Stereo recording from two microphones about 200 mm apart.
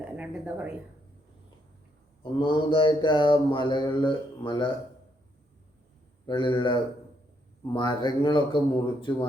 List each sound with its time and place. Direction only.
0.0 s a woman's voice: 5° right (ahead or behind)
2.4 s mantra: 25° left (ahead or behind)
6.2 s mantra: 25° left (ahead or behind)